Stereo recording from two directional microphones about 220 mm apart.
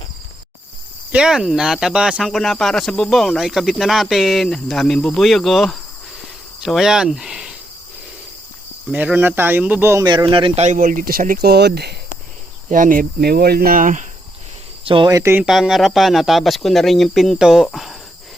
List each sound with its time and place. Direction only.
1.1 s speech: 5° right (ahead or behind)
8.9 s speech: 5° right (ahead or behind); by 14.1 s 35° right (ahead or behind)
14.8 s speech: 20° right (ahead or behind); by 17.9 s centre (ahead or behind)